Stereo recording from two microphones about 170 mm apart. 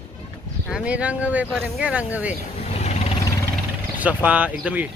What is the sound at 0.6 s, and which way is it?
Speech, 5° right (ahead or behind).